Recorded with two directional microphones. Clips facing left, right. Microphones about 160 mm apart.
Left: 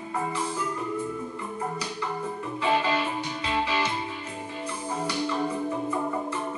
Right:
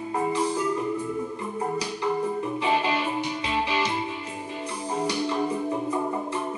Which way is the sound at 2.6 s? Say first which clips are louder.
Left 1 dB; 15° right (ahead or behind).